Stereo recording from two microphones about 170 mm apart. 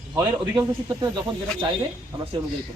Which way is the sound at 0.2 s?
20° right (ahead or behind).